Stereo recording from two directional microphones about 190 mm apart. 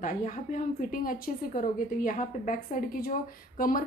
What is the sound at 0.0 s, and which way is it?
Speech, 45° left (ahead or behind).